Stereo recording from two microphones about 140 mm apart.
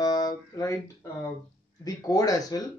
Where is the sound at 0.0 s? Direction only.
25° left (ahead or behind).